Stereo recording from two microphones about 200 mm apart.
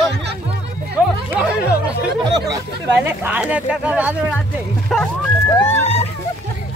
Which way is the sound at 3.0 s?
10° right (ahead or behind).